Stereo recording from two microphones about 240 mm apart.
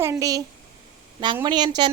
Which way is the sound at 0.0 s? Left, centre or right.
Centre.